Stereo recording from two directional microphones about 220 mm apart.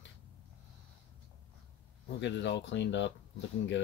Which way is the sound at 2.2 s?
55° left (ahead or behind).